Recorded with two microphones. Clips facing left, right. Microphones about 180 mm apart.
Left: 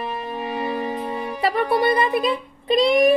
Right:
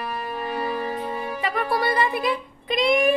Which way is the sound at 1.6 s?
20° left (ahead or behind).